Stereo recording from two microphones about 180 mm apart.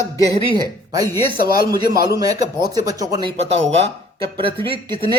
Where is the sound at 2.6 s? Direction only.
20° right (ahead or behind).